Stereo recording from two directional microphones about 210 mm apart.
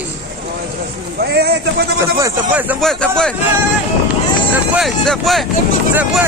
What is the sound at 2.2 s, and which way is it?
Speech, 10° right (ahead or behind).